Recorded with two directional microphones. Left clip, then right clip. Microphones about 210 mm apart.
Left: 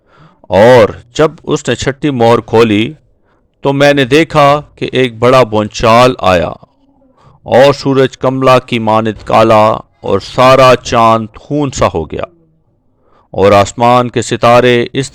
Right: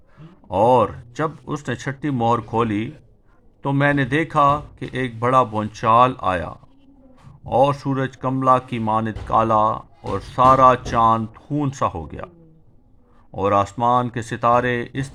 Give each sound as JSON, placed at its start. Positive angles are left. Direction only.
{"t": 0.4, "sound": "speech", "side_deg": 35}
{"t": 13.3, "sound": "speech", "side_deg": 40}